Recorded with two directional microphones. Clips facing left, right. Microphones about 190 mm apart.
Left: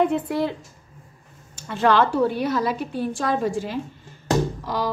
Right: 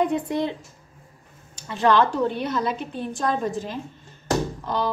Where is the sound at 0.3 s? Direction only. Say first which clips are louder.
Left 1 dB; 20° right (ahead or behind).